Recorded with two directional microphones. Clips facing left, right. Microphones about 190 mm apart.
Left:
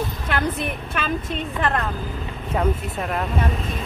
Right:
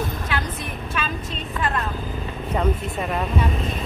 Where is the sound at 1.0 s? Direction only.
60° left (ahead or behind).